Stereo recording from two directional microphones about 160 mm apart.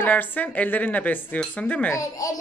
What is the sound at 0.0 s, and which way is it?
Speech, 10° left (ahead or behind).